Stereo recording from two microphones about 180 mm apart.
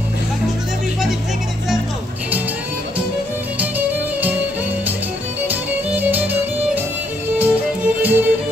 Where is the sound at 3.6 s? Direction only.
10° right (ahead or behind).